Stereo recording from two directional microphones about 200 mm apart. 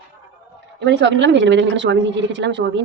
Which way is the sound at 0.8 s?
60° right (ahead or behind).